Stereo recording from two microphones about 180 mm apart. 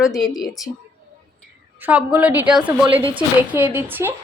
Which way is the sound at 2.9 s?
30° right (ahead or behind).